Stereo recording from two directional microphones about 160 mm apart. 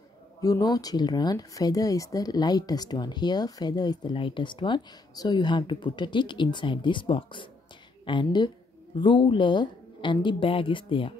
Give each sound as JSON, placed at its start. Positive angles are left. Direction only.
{"t": 0.4, "sound": "speech", "side_deg": 25}